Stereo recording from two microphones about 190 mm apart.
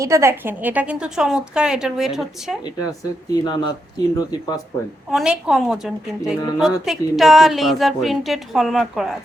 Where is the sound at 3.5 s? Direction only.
25° left (ahead or behind).